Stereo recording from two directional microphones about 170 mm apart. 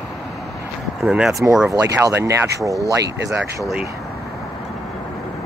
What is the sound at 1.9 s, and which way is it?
Speech, 15° right (ahead or behind).